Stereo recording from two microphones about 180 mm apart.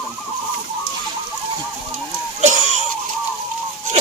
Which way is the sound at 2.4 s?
40° right (ahead or behind).